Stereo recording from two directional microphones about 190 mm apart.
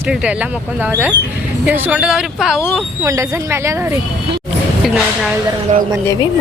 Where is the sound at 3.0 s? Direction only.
15° right (ahead or behind).